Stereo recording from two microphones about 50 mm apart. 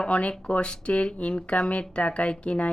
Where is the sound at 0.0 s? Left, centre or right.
Left.